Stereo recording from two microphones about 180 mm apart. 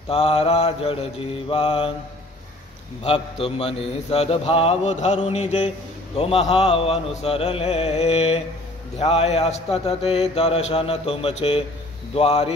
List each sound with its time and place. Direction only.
0.1 s a man's voice: 35° left (ahead or behind)
3.0 s a man's voice: 35° left (ahead or behind)